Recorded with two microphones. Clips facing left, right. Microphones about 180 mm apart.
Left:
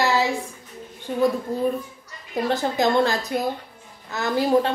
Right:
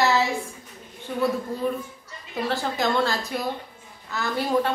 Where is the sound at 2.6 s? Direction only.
20° left (ahead or behind).